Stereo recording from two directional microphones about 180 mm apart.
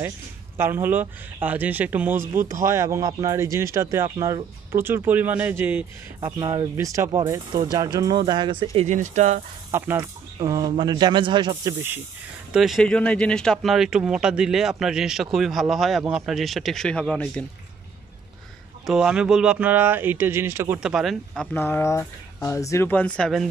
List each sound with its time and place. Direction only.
0.6 s speech: 10° right (ahead or behind); by 8.6 s 25° right (ahead or behind)
8.7 s speech: 45° right (ahead or behind)
9.7 s speech: 10° right (ahead or behind)
12.5 s speech: centre (ahead or behind)
18.9 s speech: 5° right (ahead or behind)
21.5 s speech: 10° left (ahead or behind)